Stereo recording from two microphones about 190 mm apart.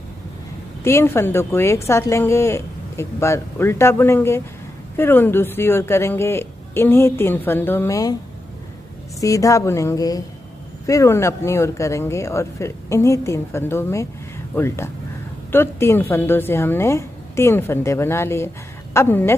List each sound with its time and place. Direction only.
0.8 s a woman's voice: 15° left (ahead or behind)
9.2 s a woman's voice: 15° left (ahead or behind)